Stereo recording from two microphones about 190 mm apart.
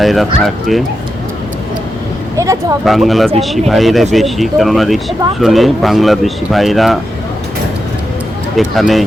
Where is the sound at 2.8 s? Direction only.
Centre (ahead or behind).